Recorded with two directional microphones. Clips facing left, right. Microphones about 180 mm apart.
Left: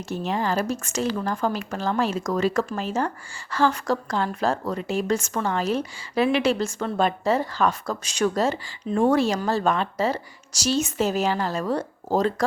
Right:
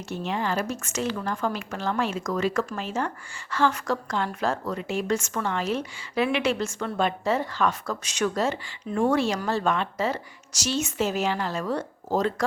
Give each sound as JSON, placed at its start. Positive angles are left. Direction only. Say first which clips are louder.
{"t": 0.1, "sound": "a woman's voice", "louder": "left 3 dB", "side_deg": 40}